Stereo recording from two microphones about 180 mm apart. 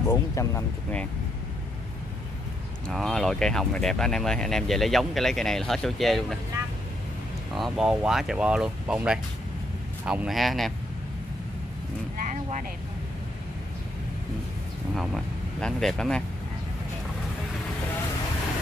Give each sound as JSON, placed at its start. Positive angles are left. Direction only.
{"t": 0.1, "sound": "speech", "side_deg": 15}
{"t": 2.9, "sound": "speech", "side_deg": 0}
{"t": 7.5, "sound": "speech", "side_deg": 0}
{"t": 12.3, "sound": "vehicle", "side_deg": -45}
{"t": 15.0, "sound": "speech", "side_deg": 0}